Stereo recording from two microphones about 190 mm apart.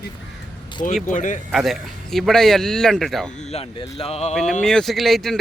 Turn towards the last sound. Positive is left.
turn(degrees=0)  # may be behind; listen again after turning